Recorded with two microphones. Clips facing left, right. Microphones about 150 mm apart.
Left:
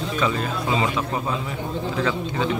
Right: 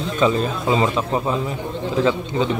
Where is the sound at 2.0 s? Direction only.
25° right (ahead or behind).